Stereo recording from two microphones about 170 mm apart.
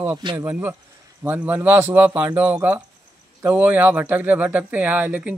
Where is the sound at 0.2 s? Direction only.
25° right (ahead or behind).